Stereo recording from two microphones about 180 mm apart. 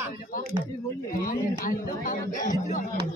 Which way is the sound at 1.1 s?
50° left (ahead or behind).